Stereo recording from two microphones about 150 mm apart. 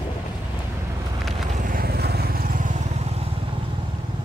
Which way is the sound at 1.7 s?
85° right.